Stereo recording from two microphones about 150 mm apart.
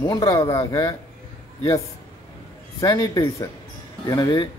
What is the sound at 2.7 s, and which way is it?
Speech, 25° left (ahead or behind).